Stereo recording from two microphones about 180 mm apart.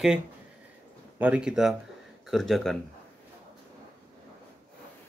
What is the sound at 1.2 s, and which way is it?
Speech, 5° right (ahead or behind).